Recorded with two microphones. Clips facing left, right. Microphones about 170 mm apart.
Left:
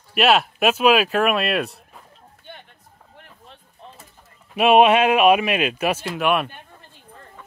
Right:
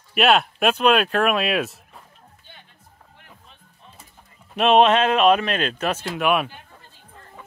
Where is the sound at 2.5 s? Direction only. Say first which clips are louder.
Left 9 dB; 60° left (ahead or behind).